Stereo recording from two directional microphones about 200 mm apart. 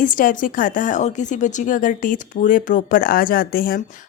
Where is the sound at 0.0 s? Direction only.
45° left (ahead or behind).